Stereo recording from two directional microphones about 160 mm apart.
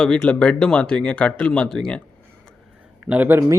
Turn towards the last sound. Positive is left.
turn(degrees=-10)  # may be behind; listen again after turning